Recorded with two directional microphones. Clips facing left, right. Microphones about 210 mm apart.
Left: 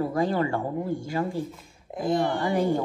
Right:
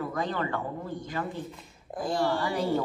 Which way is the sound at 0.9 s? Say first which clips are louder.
Left 6 dB; 45° left (ahead or behind).